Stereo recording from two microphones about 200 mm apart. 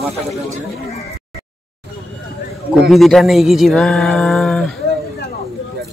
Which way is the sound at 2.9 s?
Centre (ahead or behind).